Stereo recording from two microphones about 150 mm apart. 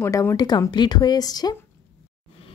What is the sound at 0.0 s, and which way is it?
Speech, 20° left (ahead or behind).